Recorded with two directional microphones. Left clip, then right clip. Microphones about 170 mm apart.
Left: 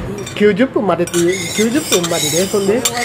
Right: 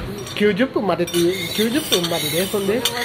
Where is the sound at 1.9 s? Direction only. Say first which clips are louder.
Left 4 dB; 45° left (ahead or behind).